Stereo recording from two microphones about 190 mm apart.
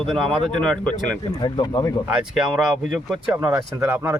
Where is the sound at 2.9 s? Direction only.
10° right (ahead or behind).